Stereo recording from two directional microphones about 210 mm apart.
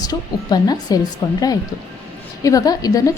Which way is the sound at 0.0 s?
20° left (ahead or behind).